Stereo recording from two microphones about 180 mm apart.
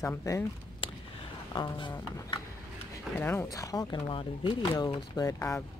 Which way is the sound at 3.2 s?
10° left (ahead or behind).